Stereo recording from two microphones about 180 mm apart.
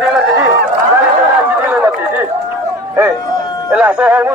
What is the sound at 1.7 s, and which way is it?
Chatter, 10° right (ahead or behind).